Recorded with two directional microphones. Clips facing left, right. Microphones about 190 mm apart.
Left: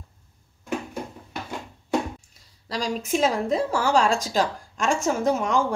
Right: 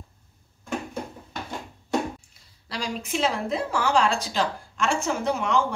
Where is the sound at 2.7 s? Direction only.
40° left (ahead or behind).